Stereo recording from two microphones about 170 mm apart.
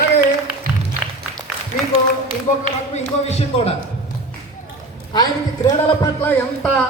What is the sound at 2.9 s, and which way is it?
Speech, 40° left (ahead or behind).